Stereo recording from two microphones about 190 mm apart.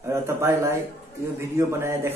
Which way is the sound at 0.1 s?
15° right (ahead or behind).